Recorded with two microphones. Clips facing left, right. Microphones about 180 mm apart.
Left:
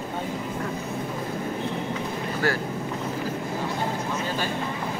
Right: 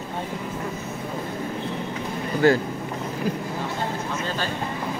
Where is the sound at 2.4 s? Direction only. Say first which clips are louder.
Right 8 dB; 20° right (ahead or behind).